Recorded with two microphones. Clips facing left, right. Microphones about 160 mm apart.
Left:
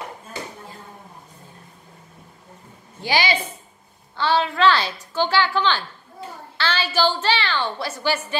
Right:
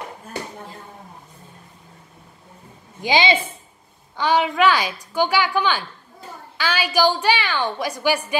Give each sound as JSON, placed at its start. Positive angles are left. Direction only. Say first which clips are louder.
{"t": 3.0, "sound": "a woman's voice", "louder": "right 3 dB", "side_deg": -20}